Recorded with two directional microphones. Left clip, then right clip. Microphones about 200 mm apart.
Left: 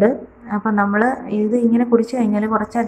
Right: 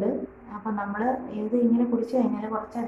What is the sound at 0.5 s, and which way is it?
A woman's voice, 30° left (ahead or behind).